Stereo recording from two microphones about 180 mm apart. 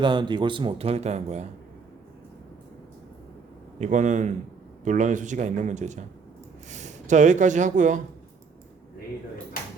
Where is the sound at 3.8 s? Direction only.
45° right (ahead or behind).